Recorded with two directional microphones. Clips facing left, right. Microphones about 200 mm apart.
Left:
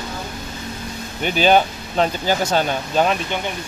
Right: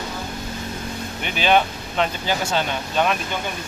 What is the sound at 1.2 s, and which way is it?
Speech, 35° left (ahead or behind).